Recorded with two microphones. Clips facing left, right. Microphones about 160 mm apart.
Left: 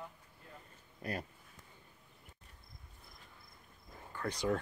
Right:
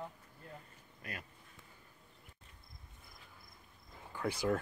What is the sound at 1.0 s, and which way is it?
Speech, 35° left (ahead or behind).